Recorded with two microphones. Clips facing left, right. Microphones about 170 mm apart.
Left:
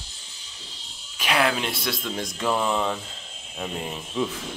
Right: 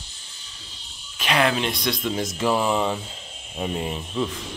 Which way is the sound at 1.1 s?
10° left (ahead or behind).